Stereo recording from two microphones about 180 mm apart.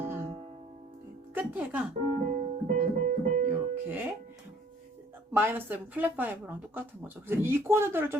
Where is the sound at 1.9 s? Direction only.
45° right (ahead or behind).